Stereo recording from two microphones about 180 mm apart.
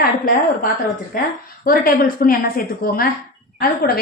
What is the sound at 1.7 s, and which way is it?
Speech, 55° left (ahead or behind).